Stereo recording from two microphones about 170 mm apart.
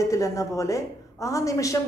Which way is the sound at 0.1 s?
20° left (ahead or behind).